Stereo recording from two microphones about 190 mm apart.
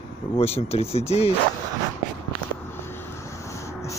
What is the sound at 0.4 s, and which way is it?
Speech, 30° left (ahead or behind).